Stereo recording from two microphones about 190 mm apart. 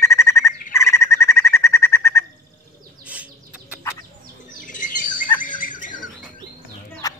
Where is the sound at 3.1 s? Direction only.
5° right (ahead or behind).